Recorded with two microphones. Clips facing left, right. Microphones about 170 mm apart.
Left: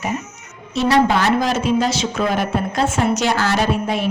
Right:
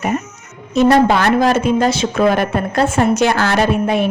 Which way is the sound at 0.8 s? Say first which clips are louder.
Right 4 dB; 50° right (ahead or behind).